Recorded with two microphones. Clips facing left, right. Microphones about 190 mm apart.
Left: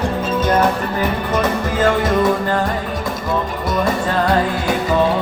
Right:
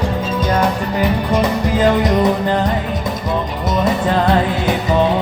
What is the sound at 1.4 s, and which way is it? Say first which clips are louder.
Music: right 1 dB; 15° right (ahead or behind).